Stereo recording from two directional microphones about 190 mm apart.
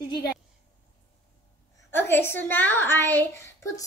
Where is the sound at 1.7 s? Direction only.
10° left (ahead or behind).